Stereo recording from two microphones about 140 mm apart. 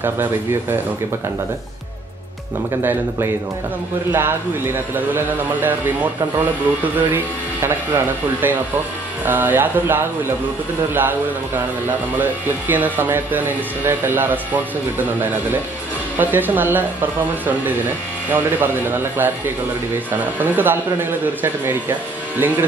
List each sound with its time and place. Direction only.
0.0 s a man's voice: 15° right (ahead or behind)
2.8 s a man's voice: 15° right (ahead or behind)
16.2 s a man's voice: 15° right (ahead or behind)
18.3 s a man's voice: 15° right (ahead or behind)
20.3 s a man's voice: 15° right (ahead or behind)